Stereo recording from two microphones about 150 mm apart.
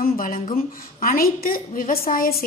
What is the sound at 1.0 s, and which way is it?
A woman's voice, 75° left (ahead or behind).